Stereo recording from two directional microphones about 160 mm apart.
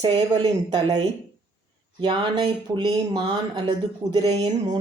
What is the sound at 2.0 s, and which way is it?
Speech, 30° right (ahead or behind).